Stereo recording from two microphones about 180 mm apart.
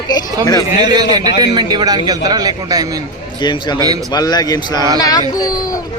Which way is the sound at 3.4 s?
25° left (ahead or behind).